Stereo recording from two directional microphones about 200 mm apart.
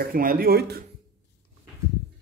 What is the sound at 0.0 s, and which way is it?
Speech, 45° right (ahead or behind).